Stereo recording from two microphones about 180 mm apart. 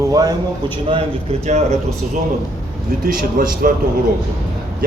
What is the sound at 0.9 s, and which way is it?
Speech, 35° right (ahead or behind).